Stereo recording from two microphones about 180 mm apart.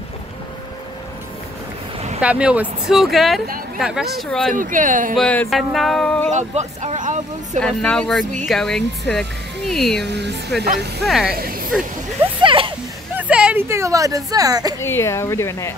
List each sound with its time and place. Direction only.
2.1 s speech: 5° right (ahead or behind)
4.6 s speech: 45° right (ahead or behind)
5.1 s speech: 5° left (ahead or behind)
6.3 s speech: 40° right (ahead or behind)
7.6 s speech: 5° left (ahead or behind)
10.0 s speech: 70° right (ahead or behind)
11.1 s speech: centre (ahead or behind)
11.3 s speech: 55° right (ahead or behind)
12.4 s a sound: 30° right (ahead or behind)
13.1 s speech: 10° right (ahead or behind)
14.8 s speech: 15° left (ahead or behind)